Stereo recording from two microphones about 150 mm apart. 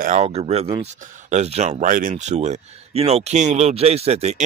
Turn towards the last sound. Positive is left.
turn(degrees=-45)  # may be behind; listen again after turning